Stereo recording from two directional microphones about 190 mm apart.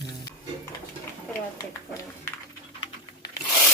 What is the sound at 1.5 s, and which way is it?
Speech, 15° left (ahead or behind).